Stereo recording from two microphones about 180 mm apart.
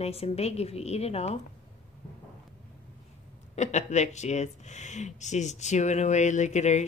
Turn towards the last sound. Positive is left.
turn(degrees=40)  # may be behind; listen again after turning